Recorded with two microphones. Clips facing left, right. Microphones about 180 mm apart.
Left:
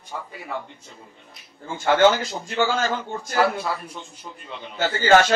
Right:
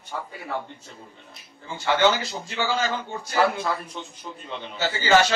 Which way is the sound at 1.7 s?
50° left (ahead or behind).